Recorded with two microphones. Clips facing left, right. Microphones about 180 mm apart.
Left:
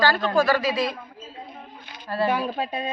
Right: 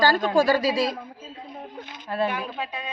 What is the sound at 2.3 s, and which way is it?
Speech, 45° left (ahead or behind).